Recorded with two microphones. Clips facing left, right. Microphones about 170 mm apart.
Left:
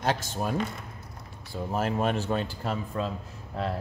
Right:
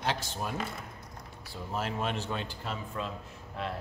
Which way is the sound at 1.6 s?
45° left (ahead or behind).